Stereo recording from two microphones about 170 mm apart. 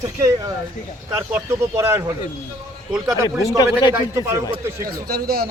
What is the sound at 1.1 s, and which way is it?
Speech, 15° right (ahead or behind).